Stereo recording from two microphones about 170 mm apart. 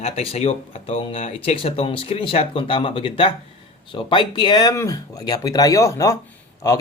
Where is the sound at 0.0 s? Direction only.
35° left (ahead or behind).